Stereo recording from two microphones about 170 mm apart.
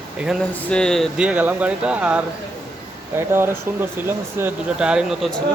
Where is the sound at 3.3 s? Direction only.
15° right (ahead or behind).